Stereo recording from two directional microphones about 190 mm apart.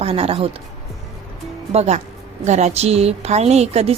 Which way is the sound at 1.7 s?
35° right (ahead or behind).